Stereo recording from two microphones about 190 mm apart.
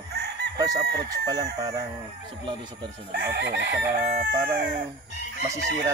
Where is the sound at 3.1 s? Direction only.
55° right (ahead or behind).